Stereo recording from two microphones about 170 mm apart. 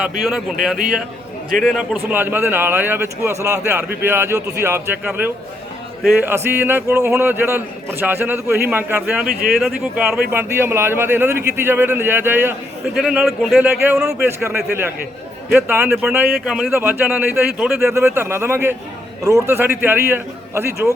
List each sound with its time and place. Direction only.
0.2 s a man's voice: centre (ahead or behind)
9.2 s speech: 60° right (ahead or behind)
9.6 s a man's voice: 5° right (ahead or behind)
13.0 s a man's voice: centre (ahead or behind)